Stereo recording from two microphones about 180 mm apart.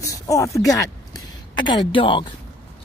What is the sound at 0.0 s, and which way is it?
A woman's voice, 15° left (ahead or behind).